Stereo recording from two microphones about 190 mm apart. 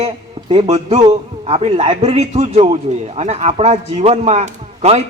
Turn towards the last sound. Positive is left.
turn(degrees=-35)  # may be behind; listen again after turning